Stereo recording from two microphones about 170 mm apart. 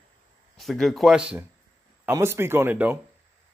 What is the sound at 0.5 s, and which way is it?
Speech, centre (ahead or behind).